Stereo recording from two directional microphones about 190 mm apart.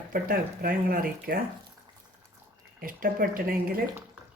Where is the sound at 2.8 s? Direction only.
45° right (ahead or behind).